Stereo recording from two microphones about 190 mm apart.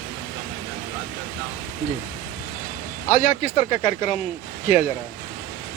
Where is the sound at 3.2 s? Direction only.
45° left (ahead or behind).